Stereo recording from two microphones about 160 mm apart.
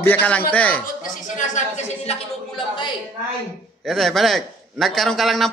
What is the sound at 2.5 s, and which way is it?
Speech, 30° left (ahead or behind).